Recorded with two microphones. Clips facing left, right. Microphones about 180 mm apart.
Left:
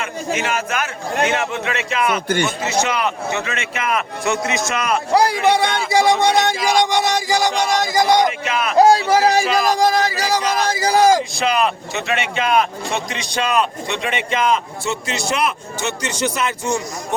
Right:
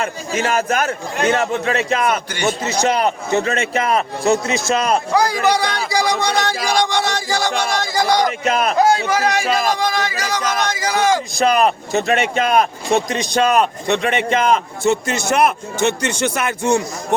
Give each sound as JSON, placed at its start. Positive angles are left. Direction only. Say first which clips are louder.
{"t": 0.0, "sound": "a man's voice", "louder": "right 2 dB", "side_deg": -40}
{"t": 2.3, "sound": "speech", "louder": "left 1 dB", "side_deg": 50}
{"t": 2.6, "sound": "a man's voice", "louder": "right 3 dB", "side_deg": -40}
{"t": 5.1, "sound": "speech", "louder": "left 4 dB", "side_deg": 30}
{"t": 6.6, "sound": "speech", "louder": "left 1 dB", "side_deg": -45}
{"t": 6.9, "sound": "a sound", "louder": "left 2 dB", "side_deg": 15}
{"t": 8.4, "sound": "a man's voice", "louder": "right 4 dB", "side_deg": -40}
{"t": 8.7, "sound": "speech", "louder": "left 7 dB", "side_deg": 35}
{"t": 11.3, "sound": "speech", "louder": "right 3 dB", "side_deg": -45}